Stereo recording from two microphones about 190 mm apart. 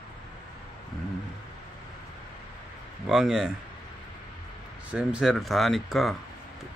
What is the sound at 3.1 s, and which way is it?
Speech, 5° right (ahead or behind).